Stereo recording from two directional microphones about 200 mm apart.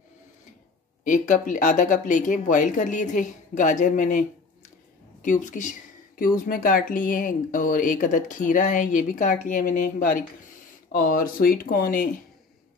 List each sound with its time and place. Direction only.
1.0 s speech: 40° left (ahead or behind)